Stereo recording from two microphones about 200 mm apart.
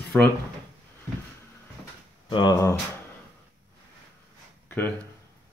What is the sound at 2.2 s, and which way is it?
Speech, 20° left (ahead or behind).